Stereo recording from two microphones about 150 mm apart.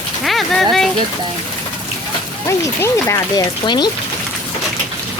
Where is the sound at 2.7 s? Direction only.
20° left (ahead or behind).